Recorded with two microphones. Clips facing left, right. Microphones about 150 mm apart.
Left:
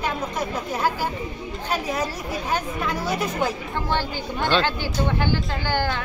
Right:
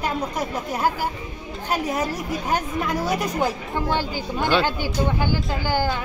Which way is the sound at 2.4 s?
45° right (ahead or behind).